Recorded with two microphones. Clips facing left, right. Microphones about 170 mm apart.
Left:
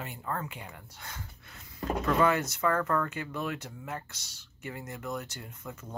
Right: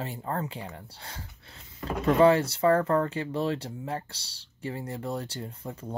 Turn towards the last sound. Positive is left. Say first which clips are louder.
# right 6 dB
turn(degrees=-30)  # may be behind; listen again after turning